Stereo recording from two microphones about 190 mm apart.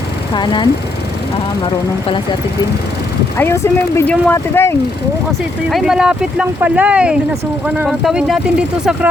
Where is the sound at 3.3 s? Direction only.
15° left (ahead or behind).